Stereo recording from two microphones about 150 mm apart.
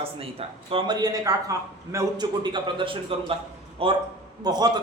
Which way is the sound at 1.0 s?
25° right (ahead or behind).